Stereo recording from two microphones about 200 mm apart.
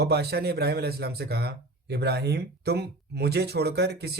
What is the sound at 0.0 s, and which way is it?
Speech, 55° right (ahead or behind).